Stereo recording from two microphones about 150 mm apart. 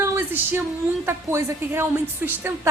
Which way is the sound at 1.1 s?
15° right (ahead or behind).